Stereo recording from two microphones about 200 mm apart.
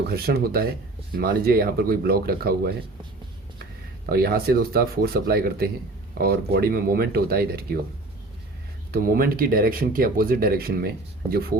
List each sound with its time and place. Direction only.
0.1 s speech: 50° right (ahead or behind)
4.1 s speech: 50° right (ahead or behind)
8.9 s speech: 45° right (ahead or behind)